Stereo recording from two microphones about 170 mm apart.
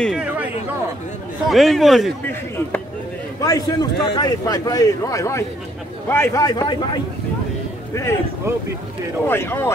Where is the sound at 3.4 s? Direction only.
20° left (ahead or behind).